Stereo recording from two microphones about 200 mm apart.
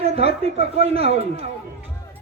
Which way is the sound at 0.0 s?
30° right (ahead or behind).